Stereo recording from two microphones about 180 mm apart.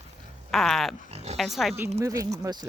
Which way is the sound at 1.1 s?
35° right (ahead or behind).